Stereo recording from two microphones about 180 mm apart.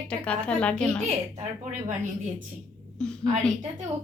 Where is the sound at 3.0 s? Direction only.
5° left (ahead or behind).